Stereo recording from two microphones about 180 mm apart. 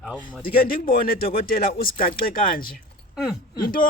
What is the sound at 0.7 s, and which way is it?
Speech, 55° left (ahead or behind).